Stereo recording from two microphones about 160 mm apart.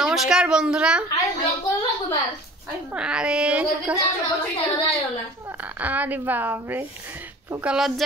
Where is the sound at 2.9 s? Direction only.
5° right (ahead or behind).